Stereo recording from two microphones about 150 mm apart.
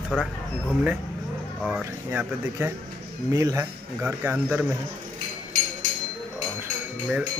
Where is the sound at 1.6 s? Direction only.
10° right (ahead or behind).